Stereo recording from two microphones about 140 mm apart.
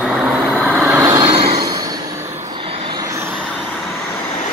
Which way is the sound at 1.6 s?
25° right (ahead or behind).